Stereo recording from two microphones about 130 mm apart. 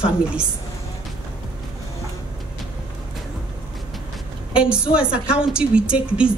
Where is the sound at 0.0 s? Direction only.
5° right (ahead or behind).